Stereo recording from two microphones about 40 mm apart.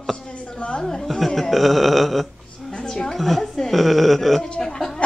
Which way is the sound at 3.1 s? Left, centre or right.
Centre.